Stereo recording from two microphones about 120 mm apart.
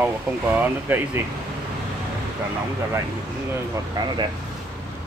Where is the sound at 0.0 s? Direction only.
15° right (ahead or behind).